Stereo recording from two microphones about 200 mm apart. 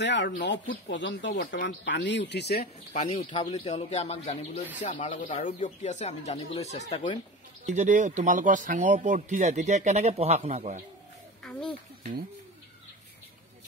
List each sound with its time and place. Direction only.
0.0 s speech: 60° left (ahead or behind)
2.9 s speech: 35° left (ahead or behind)
7.6 s speech: 35° right (ahead or behind)
12.0 s speech: 45° right (ahead or behind)